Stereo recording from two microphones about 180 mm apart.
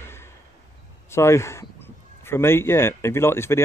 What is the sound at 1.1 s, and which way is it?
A man's voice, 15° left (ahead or behind).